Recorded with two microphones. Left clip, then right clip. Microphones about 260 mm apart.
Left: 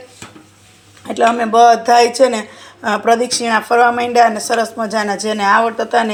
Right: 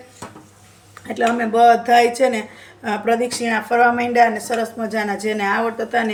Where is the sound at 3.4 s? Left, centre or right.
Left.